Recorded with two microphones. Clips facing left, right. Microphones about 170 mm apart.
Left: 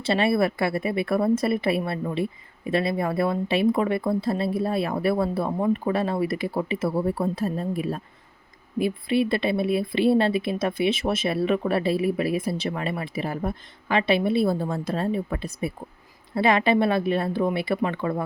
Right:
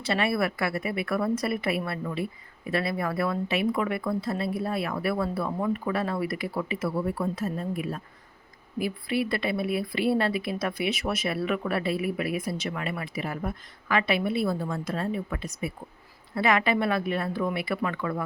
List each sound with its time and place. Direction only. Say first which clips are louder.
0.0 s a woman's voice: left 5 dB; 30° left (ahead or behind)